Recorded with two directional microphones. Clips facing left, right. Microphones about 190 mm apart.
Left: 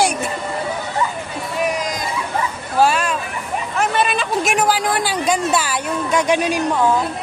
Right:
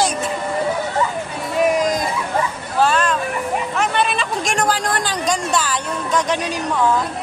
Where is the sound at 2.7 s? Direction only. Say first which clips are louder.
Left 1 dB; 10° left (ahead or behind).